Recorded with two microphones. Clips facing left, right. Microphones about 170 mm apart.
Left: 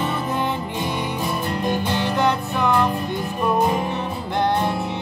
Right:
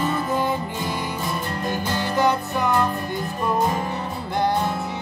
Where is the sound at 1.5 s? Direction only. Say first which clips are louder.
Left 6 dB; 15° left (ahead or behind).